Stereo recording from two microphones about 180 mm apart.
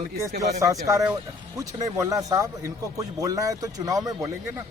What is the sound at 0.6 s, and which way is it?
A man's voice, 15° right (ahead or behind).